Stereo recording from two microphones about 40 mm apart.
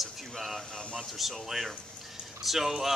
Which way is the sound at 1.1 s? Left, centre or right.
Centre.